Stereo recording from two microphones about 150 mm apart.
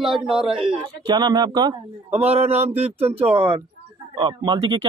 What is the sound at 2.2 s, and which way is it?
Speech, 45° right (ahead or behind).